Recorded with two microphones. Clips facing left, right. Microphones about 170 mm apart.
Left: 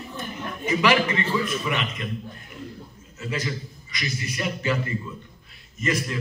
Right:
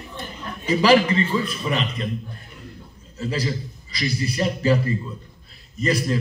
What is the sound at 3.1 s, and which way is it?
A man's voice, 35° right (ahead or behind).